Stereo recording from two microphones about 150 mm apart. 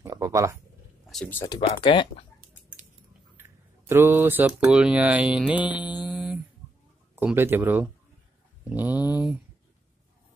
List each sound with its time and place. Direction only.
0.0 s speech: 20° right (ahead or behind)
1.0 s a sound: centre (ahead or behind)
1.5 s speech: 35° left (ahead or behind)
3.9 s speech: 15° right (ahead or behind)